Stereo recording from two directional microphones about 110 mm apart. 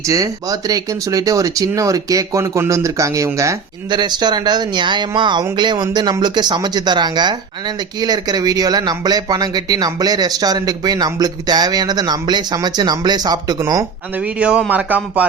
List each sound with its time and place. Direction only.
0.0 s speech: 30° right (ahead or behind)
3.8 s speech: 45° right (ahead or behind)
14.2 s a man's voice: 10° right (ahead or behind)